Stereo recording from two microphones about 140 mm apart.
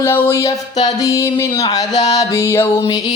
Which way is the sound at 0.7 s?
55° left (ahead or behind).